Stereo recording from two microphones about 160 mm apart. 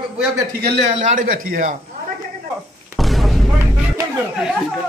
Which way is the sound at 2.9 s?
Centre (ahead or behind).